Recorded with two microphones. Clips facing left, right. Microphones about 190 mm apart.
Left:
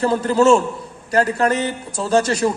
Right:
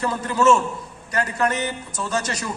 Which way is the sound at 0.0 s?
30° left (ahead or behind).